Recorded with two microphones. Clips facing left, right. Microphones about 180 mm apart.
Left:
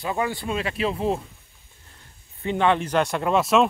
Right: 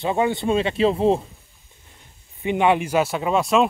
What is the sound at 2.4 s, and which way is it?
Speech, 15° right (ahead or behind).